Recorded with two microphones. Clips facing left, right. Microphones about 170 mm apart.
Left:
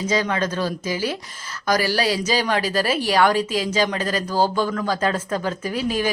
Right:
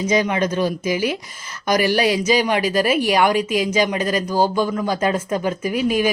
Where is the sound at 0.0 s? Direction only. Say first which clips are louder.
Right 3 dB; 15° right (ahead or behind).